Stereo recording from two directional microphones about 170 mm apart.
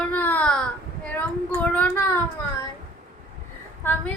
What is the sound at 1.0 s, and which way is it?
Child singing, 10° left (ahead or behind).